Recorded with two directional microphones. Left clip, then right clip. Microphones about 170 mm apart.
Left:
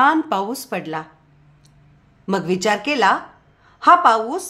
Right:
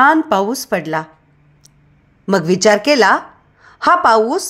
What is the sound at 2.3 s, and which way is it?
A woman's voice, 25° right (ahead or behind).